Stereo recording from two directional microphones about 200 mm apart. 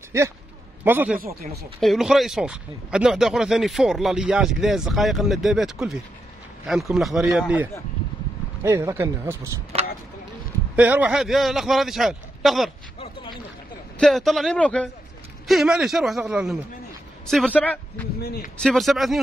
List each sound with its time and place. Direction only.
0.8 s speech: 10° right (ahead or behind)
1.2 s speech: 50° right (ahead or behind)
1.8 s speech: centre (ahead or behind)
9.7 s a sound: 30° right (ahead or behind)
10.8 s speech: 5° right (ahead or behind)
13.0 s a sound: 25° left (ahead or behind)
13.9 s speech: centre (ahead or behind)
18.2 s speech: 50° left (ahead or behind)
18.6 s speech: centre (ahead or behind)